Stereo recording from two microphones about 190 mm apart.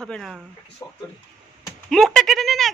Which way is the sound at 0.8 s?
20° left (ahead or behind).